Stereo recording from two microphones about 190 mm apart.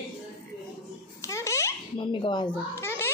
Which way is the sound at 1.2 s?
15° left (ahead or behind).